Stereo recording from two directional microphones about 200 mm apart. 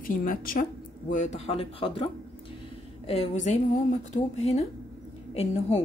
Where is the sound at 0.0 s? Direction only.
45° left (ahead or behind); by 2.0 s 30° left (ahead or behind).